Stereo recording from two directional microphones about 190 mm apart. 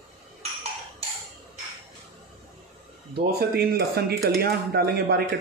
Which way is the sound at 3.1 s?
55° right (ahead or behind).